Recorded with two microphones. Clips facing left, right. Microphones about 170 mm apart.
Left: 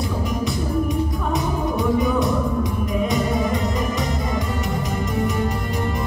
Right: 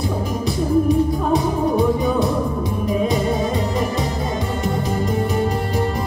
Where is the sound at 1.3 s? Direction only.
30° right (ahead or behind).